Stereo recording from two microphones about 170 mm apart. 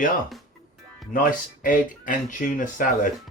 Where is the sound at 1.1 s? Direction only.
55° left (ahead or behind).